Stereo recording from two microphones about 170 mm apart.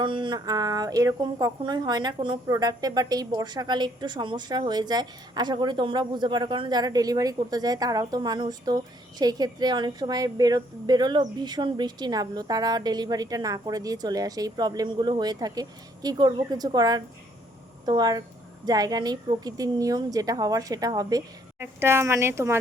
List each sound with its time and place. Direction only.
0.0 s speech: 30° right (ahead or behind)